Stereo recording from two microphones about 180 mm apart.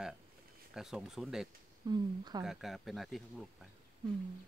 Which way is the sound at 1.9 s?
25° right (ahead or behind).